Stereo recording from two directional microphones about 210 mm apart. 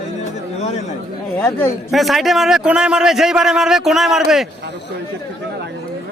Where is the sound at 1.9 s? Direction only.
Centre (ahead or behind).